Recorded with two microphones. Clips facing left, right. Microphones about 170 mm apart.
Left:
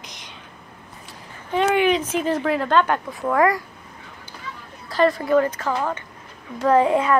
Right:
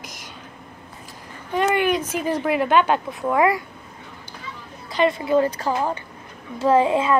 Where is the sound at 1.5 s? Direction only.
5° right (ahead or behind).